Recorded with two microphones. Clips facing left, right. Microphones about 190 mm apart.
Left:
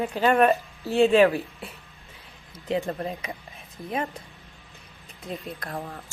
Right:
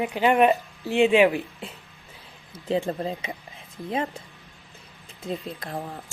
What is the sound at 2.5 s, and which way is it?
Speech, 30° right (ahead or behind).